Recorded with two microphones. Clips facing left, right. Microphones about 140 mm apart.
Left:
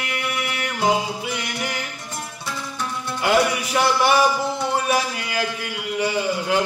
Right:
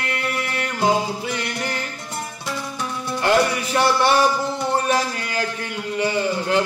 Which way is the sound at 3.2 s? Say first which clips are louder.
Right 1 dB; 5° left (ahead or behind).